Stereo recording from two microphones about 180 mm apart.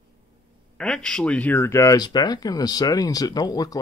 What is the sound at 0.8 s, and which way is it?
Speech, 5° left (ahead or behind).